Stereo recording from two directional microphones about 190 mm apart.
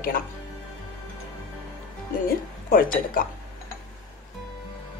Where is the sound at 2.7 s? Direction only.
45° left (ahead or behind).